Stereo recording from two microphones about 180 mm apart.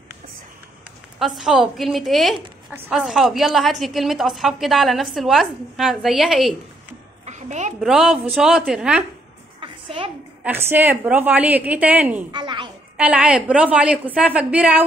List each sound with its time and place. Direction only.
1.2 s a woman's voice: 5° right (ahead or behind)
7.2 s a sound: 40° right (ahead or behind)
7.8 s a woman's voice: 5° right (ahead or behind)
9.6 s a sound: 30° right (ahead or behind)
10.4 s a woman's voice: 10° right (ahead or behind)
12.3 s a child's voice: 25° right (ahead or behind)
12.9 s a woman's voice: 5° right (ahead or behind)